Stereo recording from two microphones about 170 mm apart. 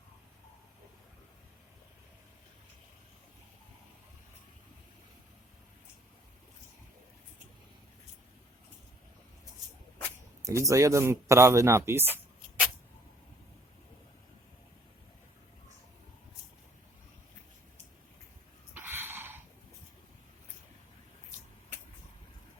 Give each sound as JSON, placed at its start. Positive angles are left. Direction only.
{"t": 10.4, "sound": "speech", "side_deg": -20}
{"t": 18.7, "sound": "dog", "side_deg": -15}